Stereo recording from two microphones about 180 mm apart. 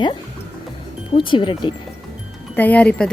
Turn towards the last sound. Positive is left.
turn(degrees=5)  # may be behind; listen again after turning